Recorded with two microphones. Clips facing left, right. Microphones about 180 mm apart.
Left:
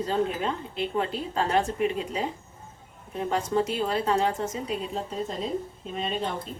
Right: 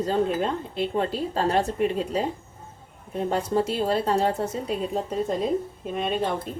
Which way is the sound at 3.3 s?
35° right (ahead or behind).